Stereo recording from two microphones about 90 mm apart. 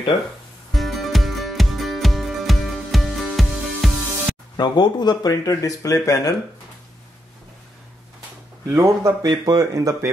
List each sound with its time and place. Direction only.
0.7 s music: centre (ahead or behind)
4.6 s speech: 55° left (ahead or behind); by 6.3 s 35° left (ahead or behind)
8.7 s speech: 35° right (ahead or behind)
9.2 s speech: 50° right (ahead or behind)